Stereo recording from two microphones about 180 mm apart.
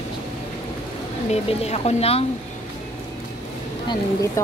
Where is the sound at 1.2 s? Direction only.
35° left (ahead or behind).